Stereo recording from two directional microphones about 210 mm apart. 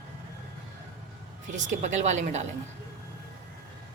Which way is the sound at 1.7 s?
35° right (ahead or behind).